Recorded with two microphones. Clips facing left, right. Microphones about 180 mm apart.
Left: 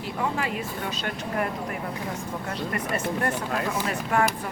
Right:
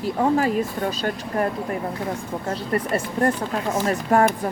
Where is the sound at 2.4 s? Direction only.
35° right (ahead or behind).